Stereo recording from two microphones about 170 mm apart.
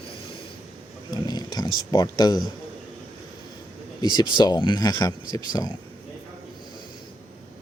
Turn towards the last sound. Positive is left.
turn(degrees=20)  # may be behind; listen again after turning